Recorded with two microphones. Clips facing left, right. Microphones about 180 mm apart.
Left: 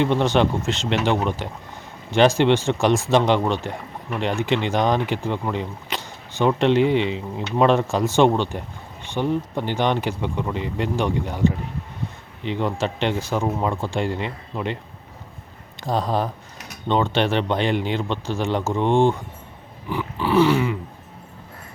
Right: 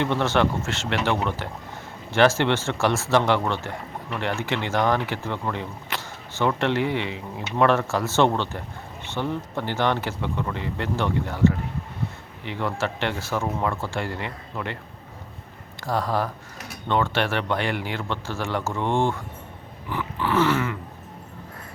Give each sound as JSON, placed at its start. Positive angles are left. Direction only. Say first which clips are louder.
{"t": 0.0, "sound": "speech", "louder": "left 3 dB", "side_deg": 15}
{"t": 15.8, "sound": "speech", "louder": "left 2 dB", "side_deg": 20}